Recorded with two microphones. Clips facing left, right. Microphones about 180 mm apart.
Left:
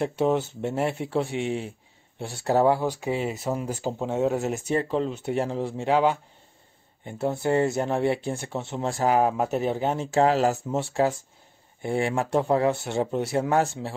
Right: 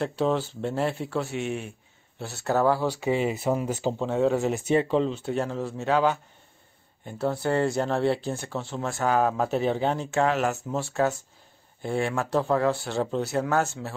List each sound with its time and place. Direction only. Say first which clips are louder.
0.0 s speech: left 2 dB; 20° left (ahead or behind)
3.0 s speech: right 2 dB; 5° right (ahead or behind)
4.0 s speech: right 1 dB; 15° left (ahead or behind)
4.8 s speech: right 2 dB; centre (ahead or behind)
5.1 s speech: left 1 dB; 20° left (ahead or behind)
10.1 s speech: left 6 dB; 30° left (ahead or behind)